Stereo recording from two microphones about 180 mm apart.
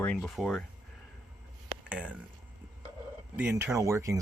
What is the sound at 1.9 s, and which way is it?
Speech, 5° right (ahead or behind).